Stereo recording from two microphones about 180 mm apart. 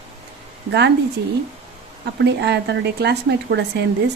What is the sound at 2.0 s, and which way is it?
Speech, 70° right (ahead or behind).